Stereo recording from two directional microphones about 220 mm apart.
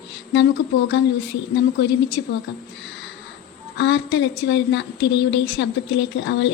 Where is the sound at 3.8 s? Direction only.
55° left (ahead or behind).